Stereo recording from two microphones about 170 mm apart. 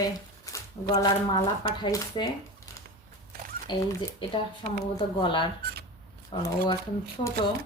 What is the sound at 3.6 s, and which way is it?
A woman's voice, 30° left (ahead or behind).